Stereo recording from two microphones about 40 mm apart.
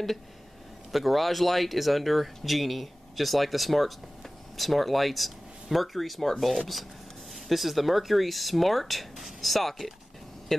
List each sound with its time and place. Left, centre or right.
0.9 s speech: centre
7.3 s speech: centre